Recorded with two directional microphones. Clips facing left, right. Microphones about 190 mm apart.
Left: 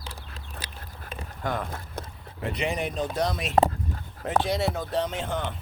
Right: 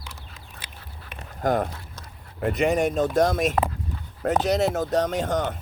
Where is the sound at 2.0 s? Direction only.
60° left (ahead or behind).